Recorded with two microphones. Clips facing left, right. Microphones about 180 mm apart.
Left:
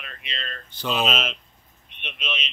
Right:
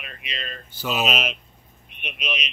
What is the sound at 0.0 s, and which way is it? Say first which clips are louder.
Speech: right 1 dB; 10° right (ahead or behind).